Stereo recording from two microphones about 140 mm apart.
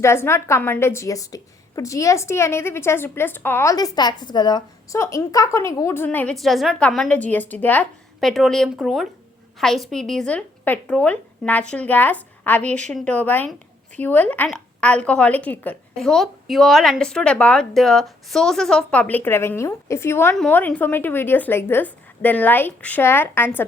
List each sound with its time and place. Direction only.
0.0 s a woman's voice: 20° left (ahead or behind)
6.3 s speech: centre (ahead or behind)
8.2 s a woman's voice: centre (ahead or behind)